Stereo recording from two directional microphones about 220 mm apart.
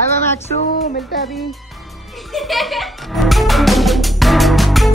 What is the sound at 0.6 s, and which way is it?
Music, 45° left (ahead or behind).